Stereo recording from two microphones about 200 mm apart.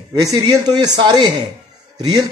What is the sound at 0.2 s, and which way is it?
Speech, 20° right (ahead or behind).